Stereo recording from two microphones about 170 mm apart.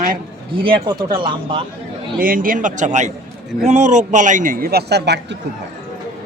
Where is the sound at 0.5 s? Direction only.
30° right (ahead or behind).